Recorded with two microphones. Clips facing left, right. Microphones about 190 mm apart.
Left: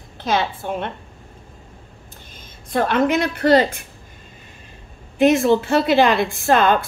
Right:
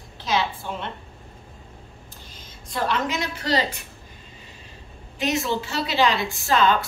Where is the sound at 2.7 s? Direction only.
55° left (ahead or behind).